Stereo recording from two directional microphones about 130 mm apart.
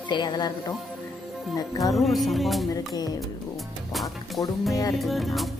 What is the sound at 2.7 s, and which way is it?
Music, 30° left (ahead or behind).